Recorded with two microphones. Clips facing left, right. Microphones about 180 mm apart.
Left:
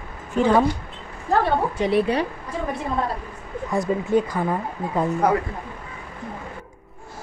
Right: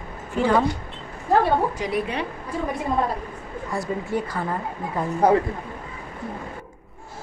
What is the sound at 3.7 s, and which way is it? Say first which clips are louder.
Speech: left 6 dB; 20° left (ahead or behind).